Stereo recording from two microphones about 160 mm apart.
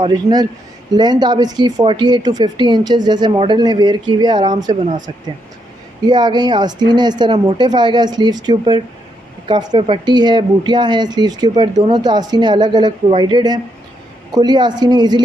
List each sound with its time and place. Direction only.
0.0 s speech: 25° right (ahead or behind)
6.0 s speech: 25° right (ahead or behind)